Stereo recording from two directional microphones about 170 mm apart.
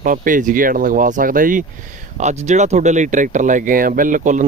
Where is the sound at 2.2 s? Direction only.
45° right (ahead or behind).